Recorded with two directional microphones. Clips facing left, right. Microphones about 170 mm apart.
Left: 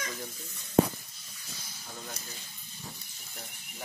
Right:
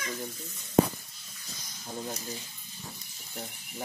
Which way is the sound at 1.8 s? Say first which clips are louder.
Right 7 dB; 30° right (ahead or behind).